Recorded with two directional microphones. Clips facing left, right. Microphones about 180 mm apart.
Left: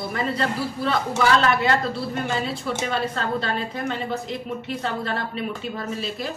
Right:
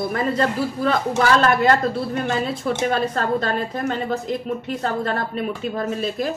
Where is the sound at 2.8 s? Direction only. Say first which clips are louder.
Right 5 dB; 50° right (ahead or behind).